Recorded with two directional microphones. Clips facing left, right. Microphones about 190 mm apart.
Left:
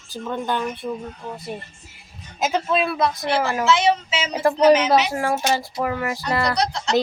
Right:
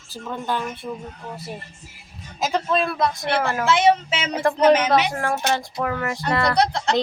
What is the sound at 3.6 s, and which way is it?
Speech, 55° right (ahead or behind).